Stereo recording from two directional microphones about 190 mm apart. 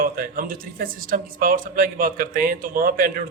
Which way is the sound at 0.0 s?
50° right (ahead or behind).